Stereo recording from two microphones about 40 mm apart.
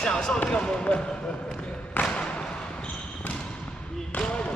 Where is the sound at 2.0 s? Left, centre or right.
Left.